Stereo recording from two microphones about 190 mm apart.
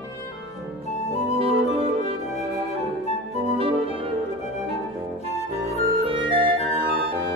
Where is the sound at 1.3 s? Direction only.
30° right (ahead or behind).